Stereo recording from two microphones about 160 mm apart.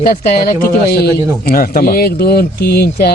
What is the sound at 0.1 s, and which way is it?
Speech, 70° left (ahead or behind).